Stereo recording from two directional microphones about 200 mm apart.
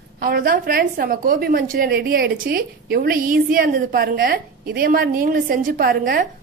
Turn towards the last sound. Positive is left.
turn(degrees=-45)  # may be behind; listen again after turning